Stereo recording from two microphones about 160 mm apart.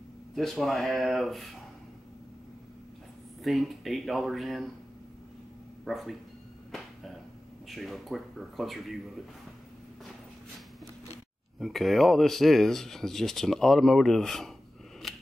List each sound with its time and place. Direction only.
0.4 s speech: centre (ahead or behind)
3.4 s speech: centre (ahead or behind)
5.9 s speech: centre (ahead or behind)
7.7 s speech: centre (ahead or behind)
11.6 s speech: centre (ahead or behind)
15.0 s scissors: centre (ahead or behind)